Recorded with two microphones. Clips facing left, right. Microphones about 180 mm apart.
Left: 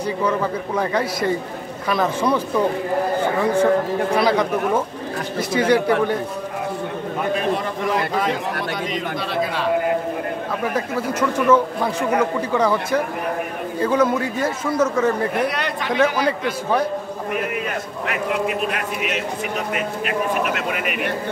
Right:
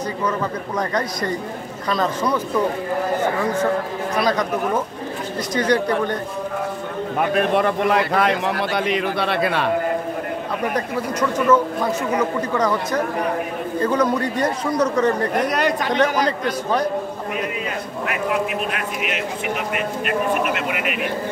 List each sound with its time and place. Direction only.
0.2 s a man's voice: 10° left (ahead or behind)
4.1 s a man's voice: 10° left (ahead or behind)
7.3 s a man's voice: 60° right (ahead or behind)
10.7 s a man's voice: 5° left (ahead or behind)
15.3 s speech: 45° right (ahead or behind)
15.9 s a man's voice: 5° left (ahead or behind)
18.5 s a man's voice: centre (ahead or behind)
20.5 s speech: 55° left (ahead or behind)